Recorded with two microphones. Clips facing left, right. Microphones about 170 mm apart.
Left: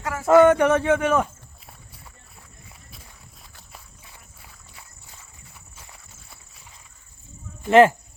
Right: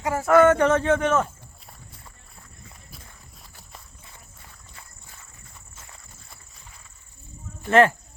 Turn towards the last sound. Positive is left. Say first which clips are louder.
# left 3 dB
turn(degrees=5)  # may be behind; listen again after turning